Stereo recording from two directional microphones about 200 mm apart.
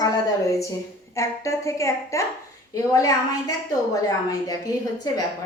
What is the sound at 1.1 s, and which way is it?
A woman's voice, 15° left (ahead or behind).